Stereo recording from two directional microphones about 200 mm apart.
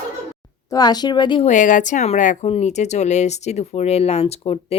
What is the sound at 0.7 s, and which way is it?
Speech, 20° left (ahead or behind).